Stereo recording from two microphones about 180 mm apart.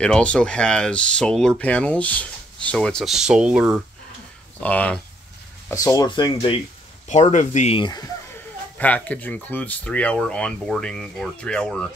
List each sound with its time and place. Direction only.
0.0 s speech: 5° left (ahead or behind)
4.6 s speech: 10° left (ahead or behind)
5.7 s speech: 20° left (ahead or behind)
7.1 s speech: 40° left (ahead or behind)
8.7 s speech: 10° left (ahead or behind)